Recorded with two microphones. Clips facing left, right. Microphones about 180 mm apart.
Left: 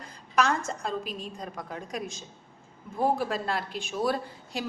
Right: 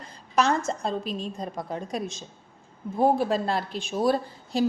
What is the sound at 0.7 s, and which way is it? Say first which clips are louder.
A woman's voice: right 4 dB; 30° right (ahead or behind).